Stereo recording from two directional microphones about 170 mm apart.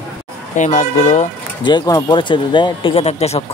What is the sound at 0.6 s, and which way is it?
Speech, 45° left (ahead or behind).